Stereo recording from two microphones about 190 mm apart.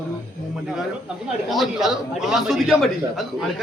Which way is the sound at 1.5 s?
Centre (ahead or behind).